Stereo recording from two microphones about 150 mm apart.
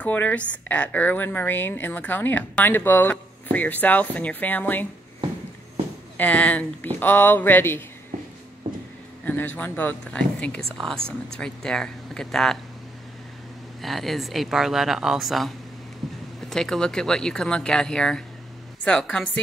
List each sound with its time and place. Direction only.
0.0 s a woman's voice: 10° left (ahead or behind)
6.1 s a woman's voice: 10° left (ahead or behind)
8.6 s music: 60° right (ahead or behind)
9.2 s a sound: 10° left (ahead or behind)
9.6 s a woman's voice: 10° left (ahead or behind)
13.7 s speech: centre (ahead or behind)
16.0 s a sound: centre (ahead or behind)
16.4 s speech: 5° left (ahead or behind)